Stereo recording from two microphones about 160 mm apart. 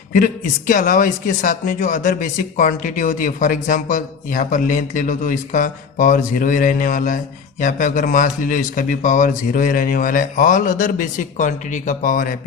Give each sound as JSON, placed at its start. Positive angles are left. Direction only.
{"t": 0.7, "sound": "speech", "side_deg": 55}